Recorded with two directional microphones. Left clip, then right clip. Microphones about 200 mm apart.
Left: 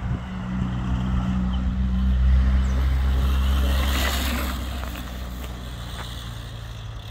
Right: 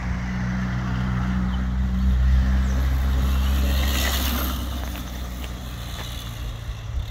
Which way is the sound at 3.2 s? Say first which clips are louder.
Left 1 dB; centre (ahead or behind).